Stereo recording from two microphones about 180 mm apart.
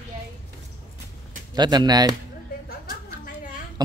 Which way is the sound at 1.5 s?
25° right (ahead or behind).